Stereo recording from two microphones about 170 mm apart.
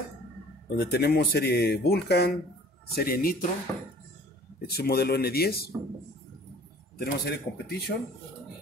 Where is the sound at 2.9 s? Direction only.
65° left (ahead or behind).